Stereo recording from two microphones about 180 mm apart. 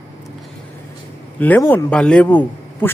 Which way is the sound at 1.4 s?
10° left (ahead or behind).